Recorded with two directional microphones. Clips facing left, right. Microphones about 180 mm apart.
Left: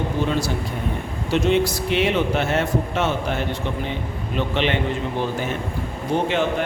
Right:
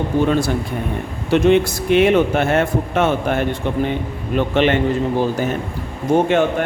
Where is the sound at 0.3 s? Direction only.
55° right (ahead or behind).